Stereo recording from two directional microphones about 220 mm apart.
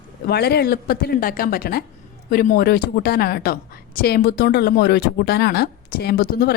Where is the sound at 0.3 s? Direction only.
45° left (ahead or behind).